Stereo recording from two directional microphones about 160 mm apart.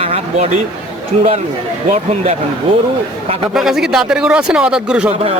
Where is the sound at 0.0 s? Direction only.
40° right (ahead or behind).